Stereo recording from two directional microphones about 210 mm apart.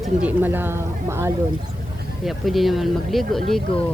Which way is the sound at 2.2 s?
Centre (ahead or behind).